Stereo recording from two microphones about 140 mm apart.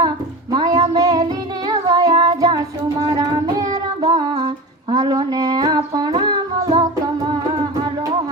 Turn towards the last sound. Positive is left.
turn(degrees=-30)  # may be behind; listen again after turning